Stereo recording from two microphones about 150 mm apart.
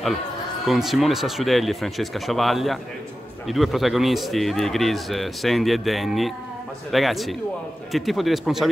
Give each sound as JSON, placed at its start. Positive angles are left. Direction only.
{"t": 0.7, "sound": "a man's voice", "side_deg": 0}